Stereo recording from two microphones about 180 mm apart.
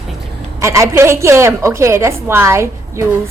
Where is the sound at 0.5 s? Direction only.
15° right (ahead or behind).